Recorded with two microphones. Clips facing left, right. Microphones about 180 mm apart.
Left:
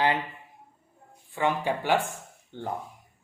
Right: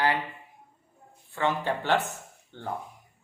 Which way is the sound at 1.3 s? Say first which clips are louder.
Left 1 dB; 15° left (ahead or behind).